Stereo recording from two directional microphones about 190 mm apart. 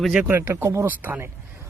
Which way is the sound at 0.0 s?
5° right (ahead or behind).